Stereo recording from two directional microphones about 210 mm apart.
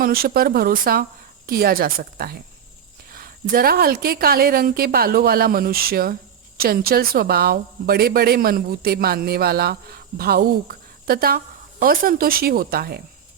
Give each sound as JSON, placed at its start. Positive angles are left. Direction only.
{"t": 0.0, "sound": "a woman's voice", "side_deg": -45}